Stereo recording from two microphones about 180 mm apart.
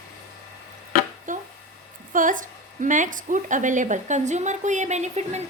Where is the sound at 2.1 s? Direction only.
45° right (ahead or behind).